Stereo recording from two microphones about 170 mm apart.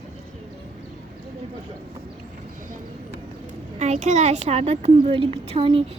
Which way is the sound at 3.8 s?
40° right (ahead or behind).